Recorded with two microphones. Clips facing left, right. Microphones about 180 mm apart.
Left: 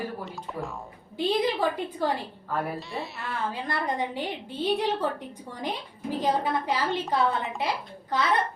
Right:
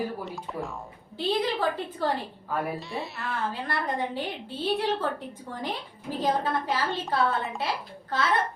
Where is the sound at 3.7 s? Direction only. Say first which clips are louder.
Left 1 dB; 15° left (ahead or behind).